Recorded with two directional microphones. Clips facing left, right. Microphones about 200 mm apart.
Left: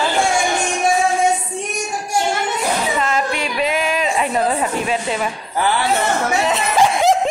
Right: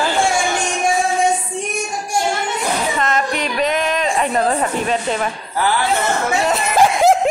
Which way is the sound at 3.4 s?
5° left (ahead or behind).